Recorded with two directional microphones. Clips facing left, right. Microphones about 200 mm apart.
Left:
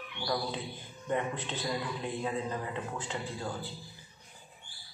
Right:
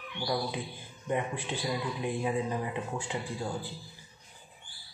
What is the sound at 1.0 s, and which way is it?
A man's voice, 10° right (ahead or behind).